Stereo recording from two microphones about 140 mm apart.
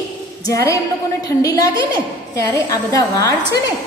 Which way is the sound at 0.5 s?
20° left (ahead or behind).